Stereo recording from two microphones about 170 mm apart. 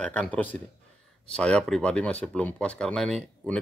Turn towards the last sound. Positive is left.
turn(degrees=5)  # may be behind; listen again after turning